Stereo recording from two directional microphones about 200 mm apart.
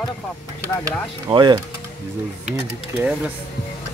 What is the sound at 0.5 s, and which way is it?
Speech, 20° right (ahead or behind).